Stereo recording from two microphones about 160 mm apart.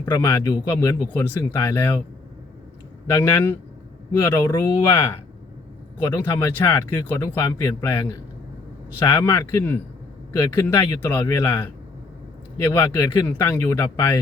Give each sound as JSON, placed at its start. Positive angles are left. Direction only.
{"t": 0.0, "sound": "speech", "side_deg": 15}
{"t": 3.1, "sound": "speech", "side_deg": 15}